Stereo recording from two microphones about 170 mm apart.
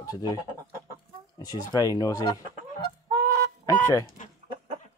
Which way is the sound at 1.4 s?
20° left (ahead or behind).